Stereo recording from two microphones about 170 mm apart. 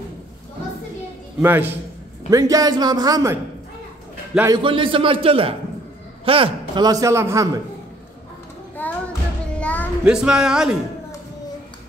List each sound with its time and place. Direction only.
1.4 s a man's voice: 10° right (ahead or behind)
4.6 s a man's voice: 30° right (ahead or behind)
8.8 s music: 10° left (ahead or behind)
9.6 s a sound: 10° left (ahead or behind)
10.0 s speech: 5° right (ahead or behind)